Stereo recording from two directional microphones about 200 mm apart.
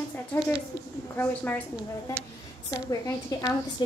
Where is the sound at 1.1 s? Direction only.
10° left (ahead or behind).